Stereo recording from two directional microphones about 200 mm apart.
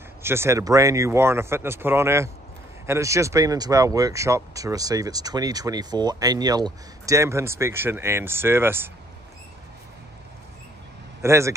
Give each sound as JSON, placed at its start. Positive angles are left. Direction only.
{"t": 0.2, "sound": "speech", "side_deg": -10}
{"t": 11.2, "sound": "speech", "side_deg": -15}